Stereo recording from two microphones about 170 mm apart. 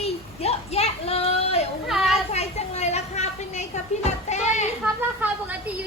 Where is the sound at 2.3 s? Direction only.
40° left (ahead or behind).